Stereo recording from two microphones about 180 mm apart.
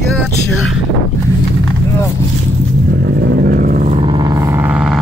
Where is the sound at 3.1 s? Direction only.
60° right (ahead or behind).